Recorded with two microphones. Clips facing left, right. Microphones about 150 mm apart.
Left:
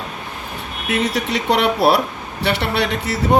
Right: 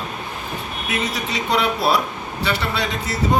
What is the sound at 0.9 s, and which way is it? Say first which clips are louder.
A man's voice: left 5 dB; 65° left (ahead or behind).